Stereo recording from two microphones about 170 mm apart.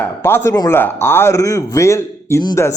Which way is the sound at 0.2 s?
15° left (ahead or behind).